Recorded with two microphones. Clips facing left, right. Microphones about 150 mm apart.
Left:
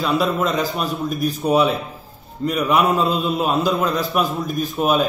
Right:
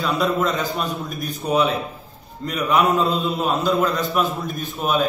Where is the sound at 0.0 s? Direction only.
Centre (ahead or behind).